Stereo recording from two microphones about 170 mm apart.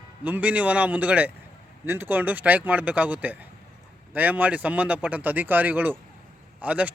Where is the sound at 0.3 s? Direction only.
10° right (ahead or behind).